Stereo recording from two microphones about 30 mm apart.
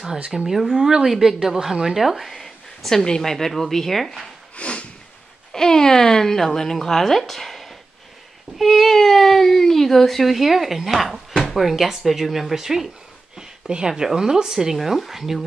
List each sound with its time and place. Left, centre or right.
0.5 s speech: centre
2.3 s a sound: centre
3.2 s speech: centre
4.6 s snort: left
5.5 s speech: centre
8.5 s speech: centre
13.4 s a sound: right
13.8 s speech: centre
14.8 s speech: centre